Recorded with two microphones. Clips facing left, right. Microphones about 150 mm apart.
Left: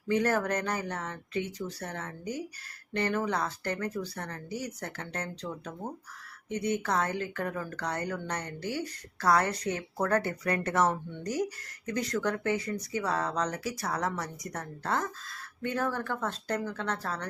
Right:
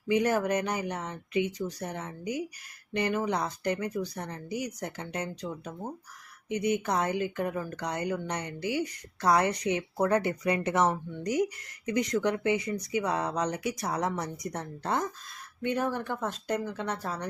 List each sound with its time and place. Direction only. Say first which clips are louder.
0.1 s speech: right 2 dB; 10° right (ahead or behind)